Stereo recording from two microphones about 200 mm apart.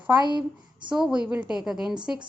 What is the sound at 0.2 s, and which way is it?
Speech, 20° right (ahead or behind).